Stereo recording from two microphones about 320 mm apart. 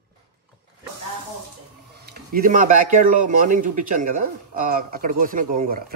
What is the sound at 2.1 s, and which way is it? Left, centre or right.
Speech, right.